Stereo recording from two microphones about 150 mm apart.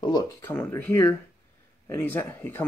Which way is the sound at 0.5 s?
15° left (ahead or behind).